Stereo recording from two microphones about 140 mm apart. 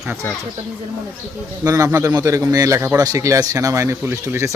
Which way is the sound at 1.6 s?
25° right (ahead or behind).